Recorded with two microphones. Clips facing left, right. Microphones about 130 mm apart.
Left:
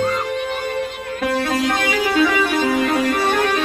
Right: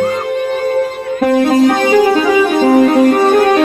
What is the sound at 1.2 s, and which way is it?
Music, 45° right (ahead or behind).